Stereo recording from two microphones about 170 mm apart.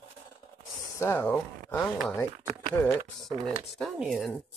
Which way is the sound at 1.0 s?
15° left (ahead or behind).